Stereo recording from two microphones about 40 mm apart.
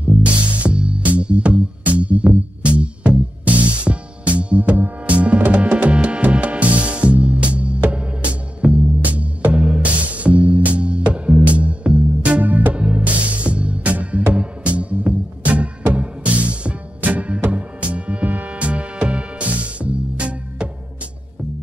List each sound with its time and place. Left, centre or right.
0.6 s music: right
12.7 s music: right